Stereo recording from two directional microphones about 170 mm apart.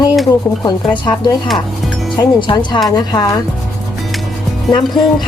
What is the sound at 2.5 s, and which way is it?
Speech, 25° left (ahead or behind).